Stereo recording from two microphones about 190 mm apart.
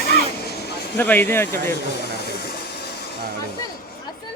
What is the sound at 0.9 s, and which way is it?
Speech, 10° left (ahead or behind).